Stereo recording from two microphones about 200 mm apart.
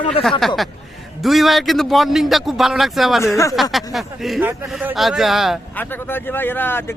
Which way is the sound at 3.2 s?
15° left (ahead or behind).